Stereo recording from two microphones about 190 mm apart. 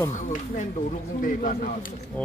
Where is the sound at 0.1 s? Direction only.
40° left (ahead or behind).